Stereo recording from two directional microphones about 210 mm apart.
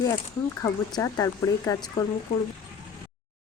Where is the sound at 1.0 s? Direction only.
15° left (ahead or behind).